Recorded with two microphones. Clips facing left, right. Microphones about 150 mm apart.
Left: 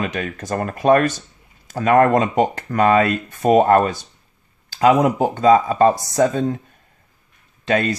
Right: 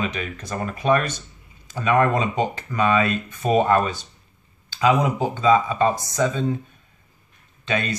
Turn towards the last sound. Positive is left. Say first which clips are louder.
# left 6 dB
turn(degrees=45)  # may be behind; listen again after turning